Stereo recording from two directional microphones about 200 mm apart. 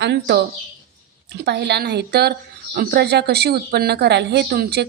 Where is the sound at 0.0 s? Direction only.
60° right (ahead or behind).